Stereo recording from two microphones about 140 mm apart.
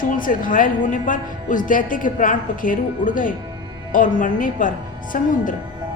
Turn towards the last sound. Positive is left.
turn(degrees=70)  # may be behind; listen again after turning